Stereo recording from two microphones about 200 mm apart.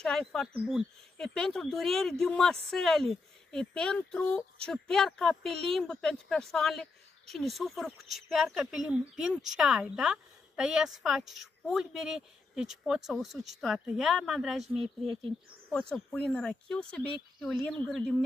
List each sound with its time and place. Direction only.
0.0 s speech: centre (ahead or behind)